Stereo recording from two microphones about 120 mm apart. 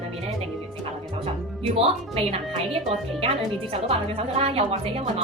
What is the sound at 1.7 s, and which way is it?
Speech, 55° right (ahead or behind).